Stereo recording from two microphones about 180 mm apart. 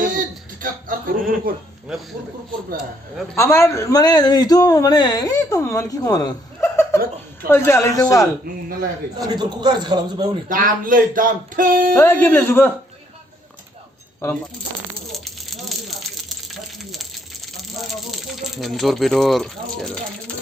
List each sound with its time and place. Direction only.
0.0 s a sound: 50° right (ahead or behind)
1.5 s speech: 55° right (ahead or behind)
3.3 s a man's voice: 15° left (ahead or behind)
9.1 s a man's voice: 20° right (ahead or behind)
10.5 s speech: 50° right (ahead or behind)
11.9 s a man's voice: 10° left (ahead or behind)
14.2 s a man's voice: 15° left (ahead or behind)
15.0 s a sound: centre (ahead or behind)